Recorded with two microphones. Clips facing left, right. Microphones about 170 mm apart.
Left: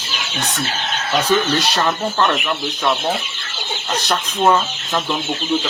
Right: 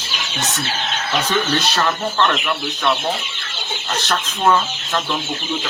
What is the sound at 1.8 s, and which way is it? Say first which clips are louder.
Speech: even; 10° left (ahead or behind).